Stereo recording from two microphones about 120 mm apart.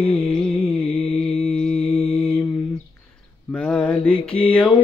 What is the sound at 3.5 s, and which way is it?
Mantra, 10° left (ahead or behind).